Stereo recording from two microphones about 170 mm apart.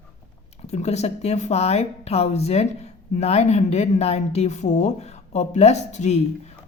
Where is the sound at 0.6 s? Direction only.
40° left (ahead or behind).